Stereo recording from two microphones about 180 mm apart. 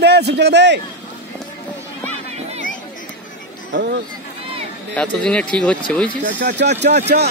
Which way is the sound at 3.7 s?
70° right (ahead or behind).